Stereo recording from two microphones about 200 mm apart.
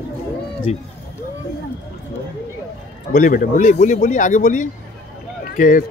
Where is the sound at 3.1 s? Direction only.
45° left (ahead or behind).